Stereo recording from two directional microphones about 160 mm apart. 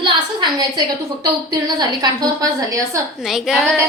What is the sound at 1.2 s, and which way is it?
A woman's voice, 25° right (ahead or behind).